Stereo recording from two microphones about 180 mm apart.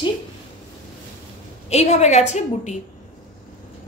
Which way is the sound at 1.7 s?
40° left (ahead or behind).